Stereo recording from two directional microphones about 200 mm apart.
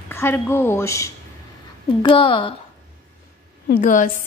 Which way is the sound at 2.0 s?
25° left (ahead or behind).